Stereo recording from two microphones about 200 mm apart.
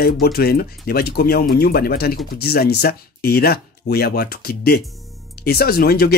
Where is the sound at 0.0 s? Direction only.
50° left (ahead or behind).